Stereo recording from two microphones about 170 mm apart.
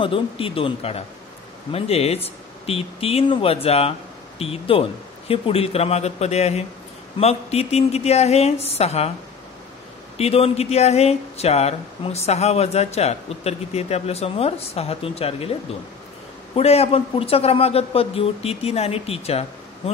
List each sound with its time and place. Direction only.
0.0 s speech: 30° left (ahead or behind)
10.1 s speech: 35° left (ahead or behind)
16.5 s speech: 35° left (ahead or behind)